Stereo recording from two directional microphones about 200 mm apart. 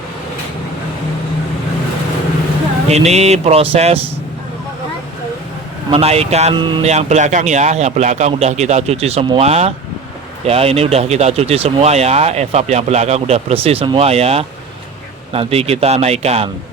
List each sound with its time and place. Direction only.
2.9 s speech: 35° right (ahead or behind)
5.9 s speech: 30° right (ahead or behind)